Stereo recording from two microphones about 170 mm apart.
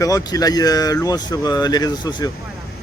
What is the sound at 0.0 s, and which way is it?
Speech, 20° left (ahead or behind).